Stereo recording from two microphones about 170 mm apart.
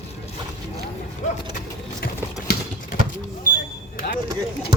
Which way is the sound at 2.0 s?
60° left (ahead or behind).